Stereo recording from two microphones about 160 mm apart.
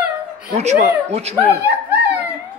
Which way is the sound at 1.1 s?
40° right (ahead or behind).